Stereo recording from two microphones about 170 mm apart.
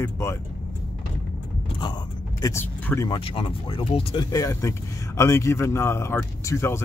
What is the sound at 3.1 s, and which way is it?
Speech, 30° left (ahead or behind).